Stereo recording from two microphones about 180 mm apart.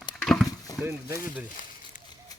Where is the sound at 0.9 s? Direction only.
15° right (ahead or behind).